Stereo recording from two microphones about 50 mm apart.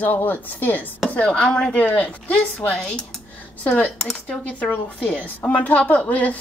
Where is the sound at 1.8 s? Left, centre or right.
Left.